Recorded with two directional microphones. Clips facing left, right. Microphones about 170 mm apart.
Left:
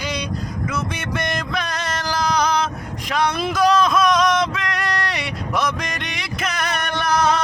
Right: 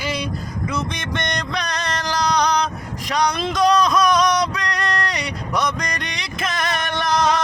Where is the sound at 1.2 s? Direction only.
5° left (ahead or behind).